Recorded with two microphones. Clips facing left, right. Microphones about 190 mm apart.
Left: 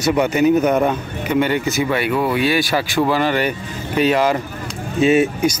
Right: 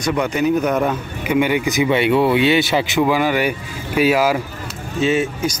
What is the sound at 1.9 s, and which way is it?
Speech, 25° right (ahead or behind).